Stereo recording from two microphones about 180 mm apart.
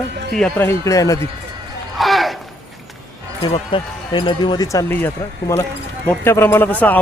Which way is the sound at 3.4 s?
25° left (ahead or behind).